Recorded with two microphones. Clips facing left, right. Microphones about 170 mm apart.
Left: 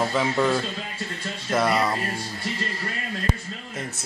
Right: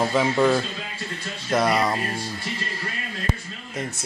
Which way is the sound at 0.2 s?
Centre (ahead or behind).